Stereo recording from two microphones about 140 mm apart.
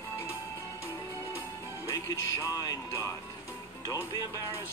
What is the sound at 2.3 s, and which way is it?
Speech, 25° left (ahead or behind).